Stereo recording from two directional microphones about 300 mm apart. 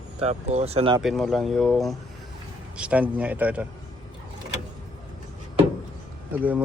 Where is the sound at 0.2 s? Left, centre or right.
Right.